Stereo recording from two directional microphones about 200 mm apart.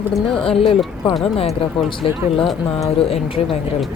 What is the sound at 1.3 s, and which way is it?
Speech, 30° left (ahead or behind).